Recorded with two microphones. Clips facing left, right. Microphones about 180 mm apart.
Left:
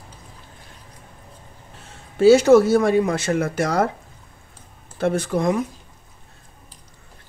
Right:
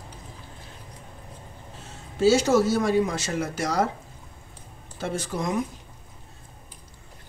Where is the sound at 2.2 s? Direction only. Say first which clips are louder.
Left 7 dB; 60° left (ahead or behind).